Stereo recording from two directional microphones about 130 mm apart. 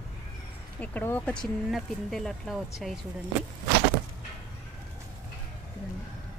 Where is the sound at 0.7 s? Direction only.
15° left (ahead or behind).